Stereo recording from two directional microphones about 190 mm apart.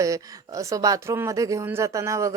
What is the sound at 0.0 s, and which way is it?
Speech, 15° right (ahead or behind).